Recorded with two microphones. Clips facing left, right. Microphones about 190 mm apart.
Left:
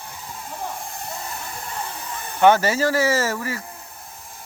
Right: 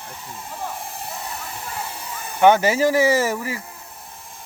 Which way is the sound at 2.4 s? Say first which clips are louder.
Right 1 dB; 15° right (ahead or behind).